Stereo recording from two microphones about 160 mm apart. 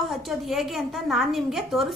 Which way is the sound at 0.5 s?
Centre (ahead or behind).